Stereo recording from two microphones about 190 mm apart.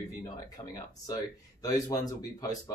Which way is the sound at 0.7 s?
20° left (ahead or behind).